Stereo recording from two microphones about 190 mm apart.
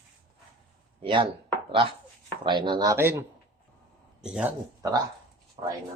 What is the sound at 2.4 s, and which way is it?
Speech, 25° right (ahead or behind).